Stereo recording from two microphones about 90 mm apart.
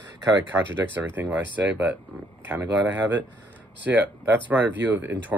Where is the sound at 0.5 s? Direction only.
25° right (ahead or behind).